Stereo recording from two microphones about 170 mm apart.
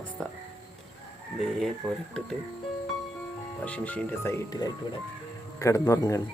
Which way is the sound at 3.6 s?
10° left (ahead or behind).